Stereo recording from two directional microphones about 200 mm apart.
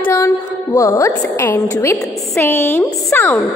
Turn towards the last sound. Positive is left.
turn(degrees=10)  # may be behind; listen again after turning